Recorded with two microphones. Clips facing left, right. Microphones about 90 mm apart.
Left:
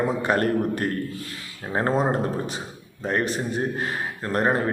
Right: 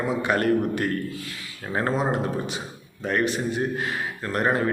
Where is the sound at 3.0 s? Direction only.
35° left (ahead or behind).